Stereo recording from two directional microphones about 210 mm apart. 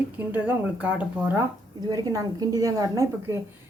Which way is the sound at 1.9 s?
15° right (ahead or behind).